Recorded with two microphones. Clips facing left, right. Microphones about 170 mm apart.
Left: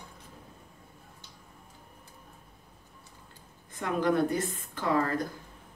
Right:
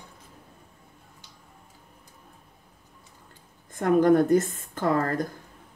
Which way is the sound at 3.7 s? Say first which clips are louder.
Right 8 dB; 50° right (ahead or behind).